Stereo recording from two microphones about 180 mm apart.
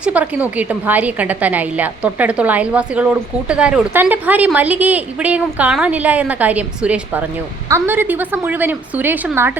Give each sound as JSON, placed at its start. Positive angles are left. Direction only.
{"t": 0.0, "sound": "a woman's voice", "side_deg": -10}